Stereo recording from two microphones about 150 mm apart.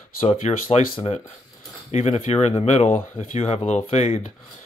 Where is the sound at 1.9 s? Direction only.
45° left (ahead or behind).